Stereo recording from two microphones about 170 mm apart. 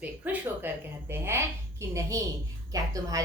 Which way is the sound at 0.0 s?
10° right (ahead or behind).